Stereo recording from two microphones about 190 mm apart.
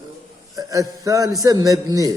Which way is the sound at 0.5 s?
20° right (ahead or behind).